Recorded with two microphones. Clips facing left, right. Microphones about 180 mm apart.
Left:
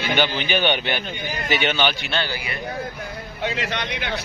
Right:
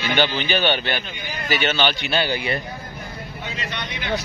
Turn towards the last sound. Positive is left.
turn(degrees=75)  # may be behind; listen again after turning